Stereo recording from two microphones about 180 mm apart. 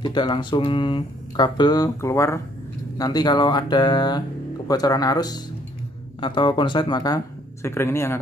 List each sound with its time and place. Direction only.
0.0 s a man's voice: 25° left (ahead or behind)